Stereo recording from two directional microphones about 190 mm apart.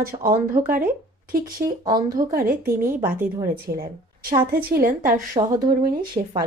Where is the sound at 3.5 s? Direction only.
50° right (ahead or behind).